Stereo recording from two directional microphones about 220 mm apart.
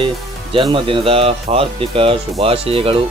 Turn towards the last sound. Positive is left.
turn(degrees=-25)  # may be behind; listen again after turning